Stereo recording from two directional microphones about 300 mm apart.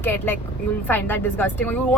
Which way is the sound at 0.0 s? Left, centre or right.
Centre.